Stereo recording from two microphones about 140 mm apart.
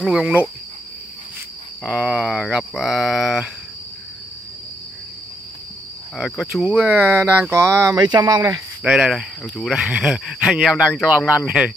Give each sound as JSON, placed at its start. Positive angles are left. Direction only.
{"t": 0.0, "sound": "cricket", "side_deg": -5}
{"t": 1.8, "sound": "speech", "side_deg": -5}
{"t": 6.1, "sound": "speech", "side_deg": 0}
{"t": 8.8, "sound": "cricket", "side_deg": -5}
{"t": 9.6, "sound": "speech", "side_deg": 0}